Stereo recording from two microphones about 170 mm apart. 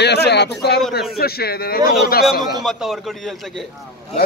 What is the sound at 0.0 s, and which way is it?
Speech, 75° left (ahead or behind).